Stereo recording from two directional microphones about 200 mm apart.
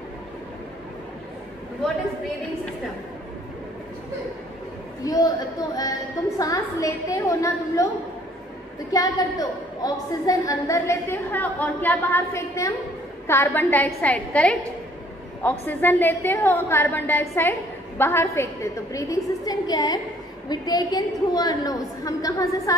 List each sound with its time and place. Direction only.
5.0 s a woman's voice: 20° left (ahead or behind)
8.9 s a woman's voice: 15° left (ahead or behind)